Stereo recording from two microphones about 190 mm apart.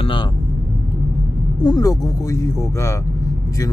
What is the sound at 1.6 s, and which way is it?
Speech, 20° left (ahead or behind).